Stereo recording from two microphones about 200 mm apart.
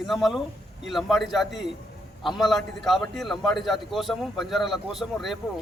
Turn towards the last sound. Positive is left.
turn(degrees=0)  # may be behind; listen again after turning